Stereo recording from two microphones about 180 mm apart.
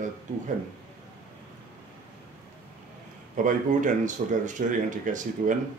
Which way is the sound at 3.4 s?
45° right (ahead or behind).